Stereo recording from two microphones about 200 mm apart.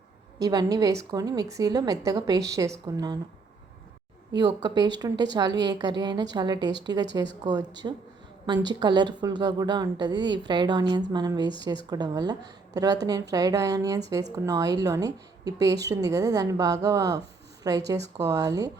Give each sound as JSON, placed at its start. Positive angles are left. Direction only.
{"t": 0.3, "sound": "a woman's voice", "side_deg": -20}
{"t": 4.3, "sound": "a woman's voice", "side_deg": -20}